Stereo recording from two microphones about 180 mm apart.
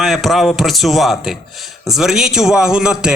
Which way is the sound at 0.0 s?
Centre (ahead or behind).